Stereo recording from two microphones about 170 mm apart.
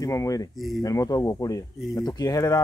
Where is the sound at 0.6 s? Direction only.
Centre (ahead or behind).